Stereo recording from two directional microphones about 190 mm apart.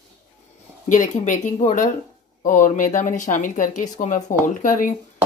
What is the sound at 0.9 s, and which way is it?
Speech, 40° left (ahead or behind).